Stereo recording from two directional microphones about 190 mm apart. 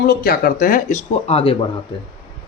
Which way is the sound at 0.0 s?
50° left (ahead or behind).